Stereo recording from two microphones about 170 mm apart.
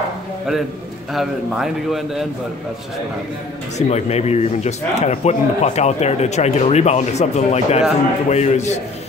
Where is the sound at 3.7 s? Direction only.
40° left (ahead or behind).